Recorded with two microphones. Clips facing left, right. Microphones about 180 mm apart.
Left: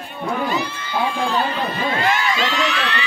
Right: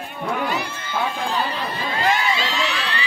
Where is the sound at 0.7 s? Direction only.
45° right (ahead or behind).